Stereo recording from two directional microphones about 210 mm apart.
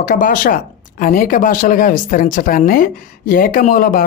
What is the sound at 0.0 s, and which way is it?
Speech, 40° left (ahead or behind).